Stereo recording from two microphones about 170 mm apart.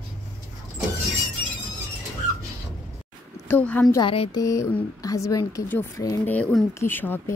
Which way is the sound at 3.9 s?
30° left (ahead or behind).